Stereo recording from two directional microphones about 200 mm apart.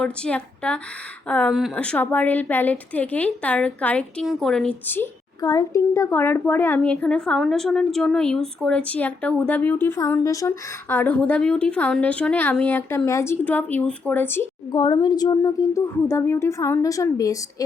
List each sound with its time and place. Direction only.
0.0 s a woman's voice: 5° left (ahead or behind)
14.8 s a woman's voice: 20° left (ahead or behind)